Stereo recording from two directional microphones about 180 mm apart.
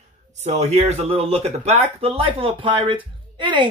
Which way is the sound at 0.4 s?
40° right (ahead or behind).